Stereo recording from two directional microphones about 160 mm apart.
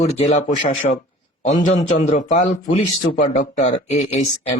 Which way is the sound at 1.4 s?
50° left (ahead or behind).